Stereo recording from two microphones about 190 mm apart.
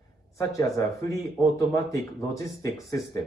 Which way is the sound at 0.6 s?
15° left (ahead or behind).